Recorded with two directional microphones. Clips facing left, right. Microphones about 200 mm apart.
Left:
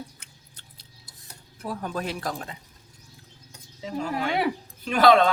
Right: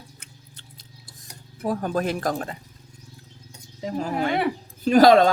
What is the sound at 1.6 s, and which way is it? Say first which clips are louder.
Speech: right 6 dB; 45° right (ahead or behind).